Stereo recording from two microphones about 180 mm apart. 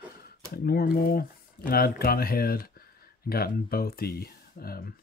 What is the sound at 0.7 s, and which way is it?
Speech, 60° left (ahead or behind).